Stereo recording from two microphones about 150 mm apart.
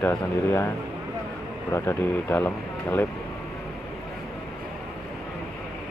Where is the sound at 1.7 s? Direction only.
20° left (ahead or behind).